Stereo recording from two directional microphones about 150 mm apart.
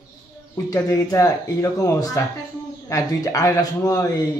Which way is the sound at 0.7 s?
20° left (ahead or behind).